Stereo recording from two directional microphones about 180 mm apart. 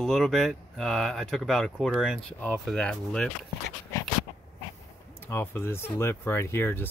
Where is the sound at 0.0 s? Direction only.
Centre (ahead or behind).